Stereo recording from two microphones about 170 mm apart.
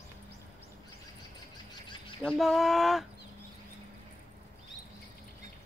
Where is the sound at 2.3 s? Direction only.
Centre (ahead or behind).